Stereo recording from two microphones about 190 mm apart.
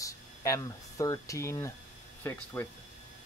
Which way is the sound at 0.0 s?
15° left (ahead or behind).